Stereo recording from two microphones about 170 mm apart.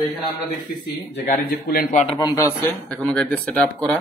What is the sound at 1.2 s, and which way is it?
Speech, 55° left (ahead or behind).